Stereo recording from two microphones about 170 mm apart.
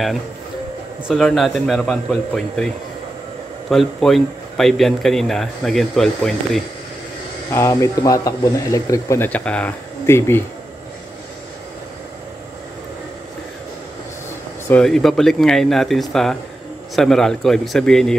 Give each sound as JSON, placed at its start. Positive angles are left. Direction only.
{"t": 1.0, "sound": "speech", "side_deg": 0}
{"t": 3.7, "sound": "speech", "side_deg": 0}
{"t": 7.5, "sound": "speech", "side_deg": 15}
{"t": 14.7, "sound": "speech", "side_deg": 5}